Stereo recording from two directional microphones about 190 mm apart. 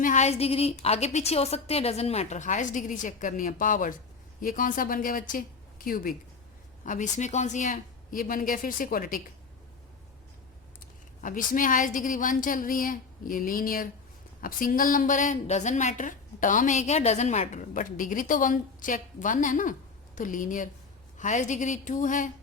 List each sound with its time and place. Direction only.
0.0 s a woman's voice: 40° left (ahead or behind)
11.2 s a woman's voice: 45° left (ahead or behind)